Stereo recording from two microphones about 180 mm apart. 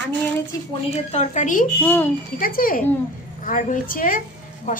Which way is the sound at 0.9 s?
35° left (ahead or behind).